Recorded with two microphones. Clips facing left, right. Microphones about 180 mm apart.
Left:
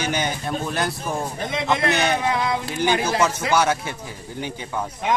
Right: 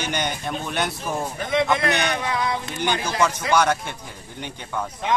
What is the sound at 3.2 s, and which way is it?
Speech, 10° left (ahead or behind).